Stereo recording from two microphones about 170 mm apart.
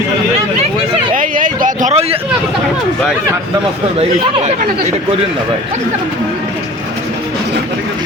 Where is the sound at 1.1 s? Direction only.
50° right (ahead or behind).